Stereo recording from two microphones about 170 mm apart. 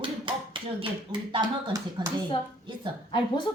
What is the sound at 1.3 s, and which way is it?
Speech, 30° right (ahead or behind).